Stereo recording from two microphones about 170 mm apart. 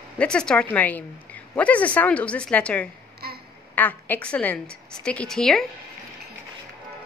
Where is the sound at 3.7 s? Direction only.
10° left (ahead or behind).